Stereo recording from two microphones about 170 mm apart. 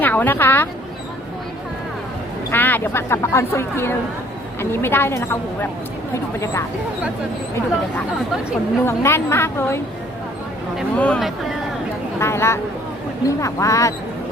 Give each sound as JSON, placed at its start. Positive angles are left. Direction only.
{"t": 0.0, "sound": "a woman's voice", "side_deg": 10}
{"t": 2.5, "sound": "speech", "side_deg": 10}
{"t": 6.4, "sound": "speech", "side_deg": 15}
{"t": 8.8, "sound": "speech", "side_deg": 15}